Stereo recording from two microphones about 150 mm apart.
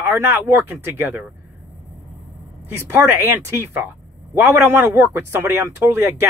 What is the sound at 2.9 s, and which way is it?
Speech, 15° right (ahead or behind).